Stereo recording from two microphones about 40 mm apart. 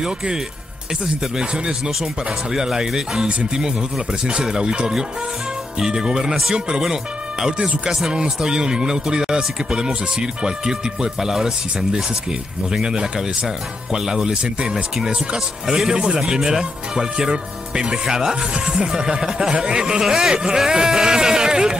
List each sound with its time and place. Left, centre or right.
0.0 s speech: centre
7.5 s speech: right